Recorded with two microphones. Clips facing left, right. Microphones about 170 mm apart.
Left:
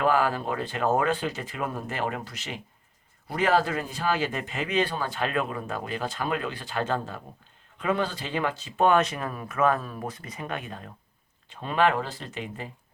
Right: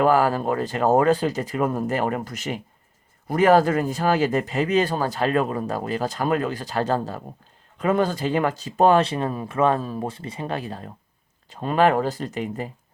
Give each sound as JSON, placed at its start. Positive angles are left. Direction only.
{"t": 0.0, "sound": "speech", "side_deg": -40}